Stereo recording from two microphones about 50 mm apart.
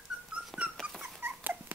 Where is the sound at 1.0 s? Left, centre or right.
Right.